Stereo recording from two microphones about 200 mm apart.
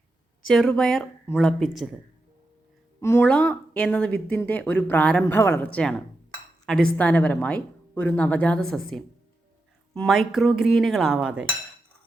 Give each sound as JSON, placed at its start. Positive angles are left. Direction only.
{"t": 0.4, "sound": "speech", "side_deg": 0}
{"t": 3.0, "sound": "speech", "side_deg": 10}